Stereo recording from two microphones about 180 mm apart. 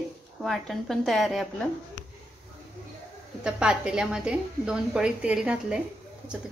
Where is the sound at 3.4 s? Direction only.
5° right (ahead or behind).